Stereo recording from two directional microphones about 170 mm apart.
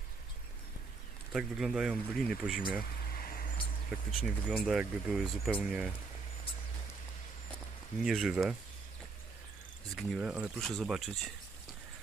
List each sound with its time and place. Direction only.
1.3 s speech: centre (ahead or behind)
3.1 s a sound: 60° left (ahead or behind)
3.9 s speech: centre (ahead or behind)
8.0 s speech: 5° right (ahead or behind)
9.9 s speech: 5° right (ahead or behind)